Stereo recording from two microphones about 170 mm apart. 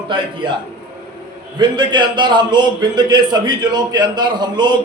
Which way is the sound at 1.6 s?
25° right (ahead or behind).